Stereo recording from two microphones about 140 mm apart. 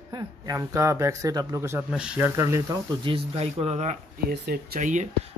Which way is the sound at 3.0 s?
40° right (ahead or behind).